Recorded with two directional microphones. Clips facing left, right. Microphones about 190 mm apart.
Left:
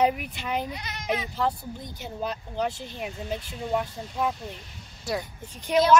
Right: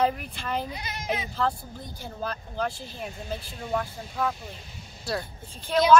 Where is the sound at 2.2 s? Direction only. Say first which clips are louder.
Left 2 dB; 20° left (ahead or behind).